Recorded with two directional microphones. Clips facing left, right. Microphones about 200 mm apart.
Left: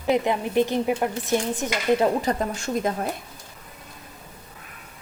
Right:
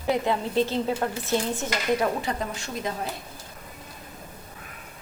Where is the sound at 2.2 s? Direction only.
45° left (ahead or behind).